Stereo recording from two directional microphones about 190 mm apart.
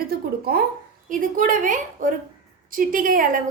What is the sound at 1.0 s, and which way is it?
A woman's voice, 45° right (ahead or behind).